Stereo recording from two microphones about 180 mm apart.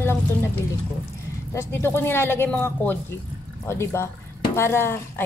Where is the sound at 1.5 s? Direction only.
10° left (ahead or behind).